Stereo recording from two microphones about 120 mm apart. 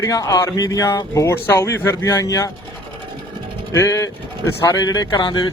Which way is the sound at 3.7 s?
25° left (ahead or behind).